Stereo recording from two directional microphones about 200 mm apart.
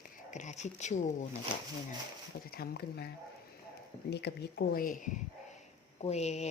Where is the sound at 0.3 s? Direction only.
35° left (ahead or behind).